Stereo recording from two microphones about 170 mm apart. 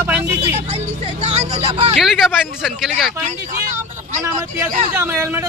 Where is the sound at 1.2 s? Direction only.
40° right (ahead or behind).